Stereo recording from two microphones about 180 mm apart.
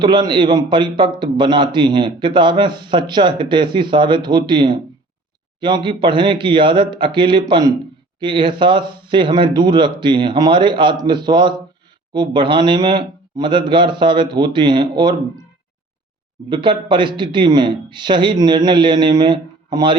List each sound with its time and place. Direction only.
0.0 s a man's voice: 25° right (ahead or behind)
16.5 s a man's voice: 25° right (ahead or behind)